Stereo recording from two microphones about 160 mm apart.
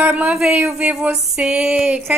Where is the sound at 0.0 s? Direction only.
5° right (ahead or behind).